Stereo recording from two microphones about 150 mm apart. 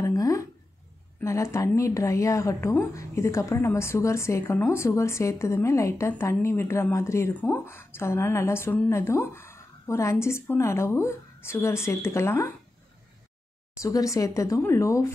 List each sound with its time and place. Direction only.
0.0 s a sound: 20° left (ahead or behind)
1.2 s a woman's voice: 20° left (ahead or behind)
13.8 s a woman's voice: 20° left (ahead or behind)